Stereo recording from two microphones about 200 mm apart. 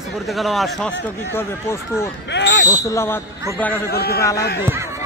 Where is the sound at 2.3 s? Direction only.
60° left (ahead or behind).